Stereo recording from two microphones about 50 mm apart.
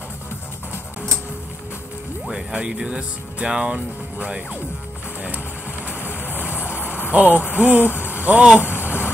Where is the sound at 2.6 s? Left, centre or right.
Centre.